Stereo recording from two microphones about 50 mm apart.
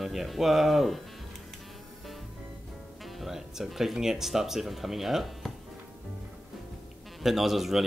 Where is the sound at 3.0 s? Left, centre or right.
Centre.